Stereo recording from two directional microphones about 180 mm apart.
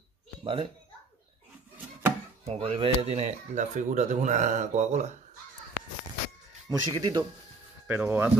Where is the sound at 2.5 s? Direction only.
35° right (ahead or behind).